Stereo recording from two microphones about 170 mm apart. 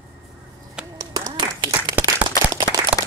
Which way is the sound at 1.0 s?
20° right (ahead or behind).